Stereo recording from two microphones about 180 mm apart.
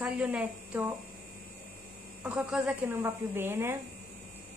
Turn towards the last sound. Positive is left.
turn(degrees=-15)  # may be behind; listen again after turning